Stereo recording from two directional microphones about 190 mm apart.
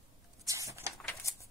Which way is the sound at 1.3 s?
15° left (ahead or behind).